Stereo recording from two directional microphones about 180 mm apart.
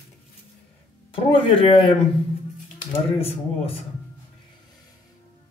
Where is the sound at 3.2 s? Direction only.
35° left (ahead or behind).